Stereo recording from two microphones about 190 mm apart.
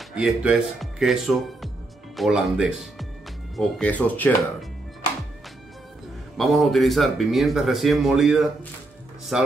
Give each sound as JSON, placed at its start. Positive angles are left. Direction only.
{"t": 0.1, "sound": "speech", "side_deg": -5}
{"t": 6.3, "sound": "speech", "side_deg": 0}